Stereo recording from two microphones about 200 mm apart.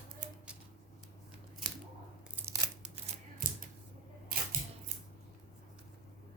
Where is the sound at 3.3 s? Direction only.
45° right (ahead or behind).